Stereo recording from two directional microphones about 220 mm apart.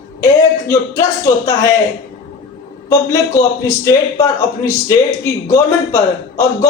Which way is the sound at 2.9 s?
15° left (ahead or behind).